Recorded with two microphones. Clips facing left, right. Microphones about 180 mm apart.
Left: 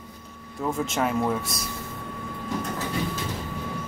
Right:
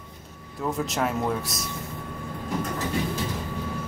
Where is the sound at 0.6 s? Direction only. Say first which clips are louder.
Left 1 dB; centre (ahead or behind).